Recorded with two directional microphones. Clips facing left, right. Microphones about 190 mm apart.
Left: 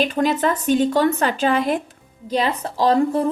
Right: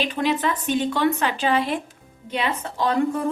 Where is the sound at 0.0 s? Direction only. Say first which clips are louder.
Left 4 dB; 45° left (ahead or behind).